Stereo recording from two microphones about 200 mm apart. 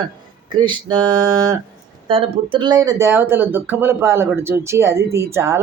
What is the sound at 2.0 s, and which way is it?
Speech, 25° right (ahead or behind).